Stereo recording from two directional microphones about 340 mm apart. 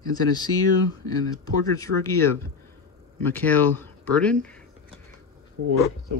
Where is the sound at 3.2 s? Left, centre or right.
Centre.